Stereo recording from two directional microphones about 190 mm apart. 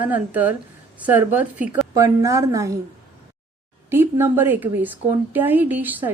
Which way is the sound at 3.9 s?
10° right (ahead or behind).